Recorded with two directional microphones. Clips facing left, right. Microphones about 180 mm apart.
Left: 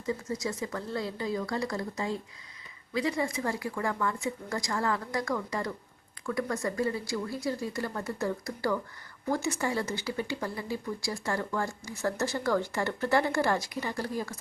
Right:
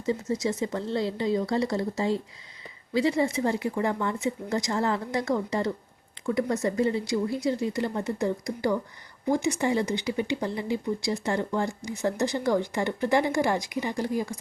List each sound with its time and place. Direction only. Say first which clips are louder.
0.0 s speech: right 5 dB; 25° right (ahead or behind)